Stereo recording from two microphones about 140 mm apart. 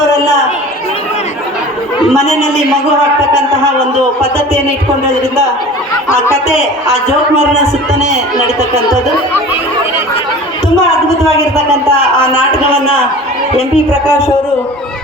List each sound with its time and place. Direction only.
11.5 s a man's voice: 20° right (ahead or behind)